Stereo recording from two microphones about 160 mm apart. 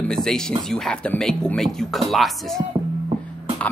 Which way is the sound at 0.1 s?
5° left (ahead or behind).